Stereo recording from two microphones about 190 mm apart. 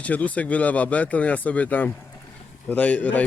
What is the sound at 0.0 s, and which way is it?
Speech, 10° left (ahead or behind).